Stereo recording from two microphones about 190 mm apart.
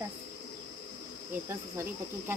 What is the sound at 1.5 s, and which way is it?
Speech, 10° right (ahead or behind).